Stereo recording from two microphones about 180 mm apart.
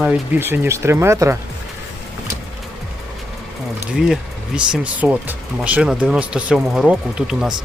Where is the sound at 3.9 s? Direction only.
5° right (ahead or behind).